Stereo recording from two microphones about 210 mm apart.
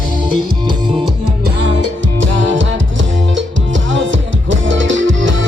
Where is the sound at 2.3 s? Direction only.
65° right (ahead or behind).